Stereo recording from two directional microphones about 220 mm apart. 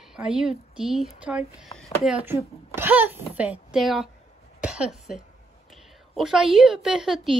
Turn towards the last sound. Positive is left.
turn(degrees=0)  # may be behind; listen again after turning